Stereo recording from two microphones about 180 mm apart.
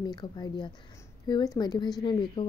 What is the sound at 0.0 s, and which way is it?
A woman's voice, 20° left (ahead or behind).